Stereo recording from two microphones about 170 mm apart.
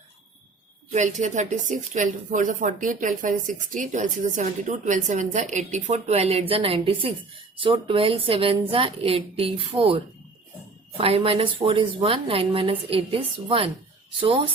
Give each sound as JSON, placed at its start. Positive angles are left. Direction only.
{"t": 0.9, "sound": "a woman's voice", "side_deg": -45}